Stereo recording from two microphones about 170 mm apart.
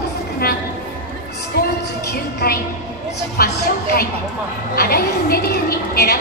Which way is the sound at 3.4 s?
65° left (ahead or behind).